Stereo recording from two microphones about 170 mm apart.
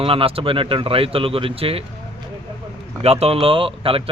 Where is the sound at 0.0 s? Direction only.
35° right (ahead or behind).